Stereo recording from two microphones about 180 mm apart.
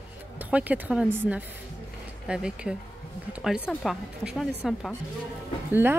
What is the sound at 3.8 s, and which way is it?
A woman's voice, centre (ahead or behind).